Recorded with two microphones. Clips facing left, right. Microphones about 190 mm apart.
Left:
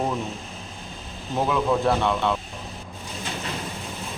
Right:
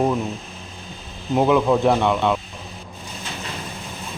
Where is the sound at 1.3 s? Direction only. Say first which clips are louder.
Right 6 dB; 15° right (ahead or behind).